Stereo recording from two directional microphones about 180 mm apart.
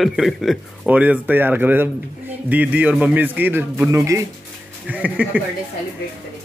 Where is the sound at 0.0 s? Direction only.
Centre (ahead or behind).